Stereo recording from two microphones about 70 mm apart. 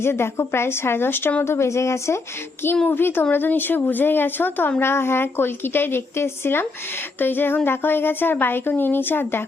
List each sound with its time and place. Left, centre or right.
0.0 s a woman's voice: left
2.9 s a woman's voice: left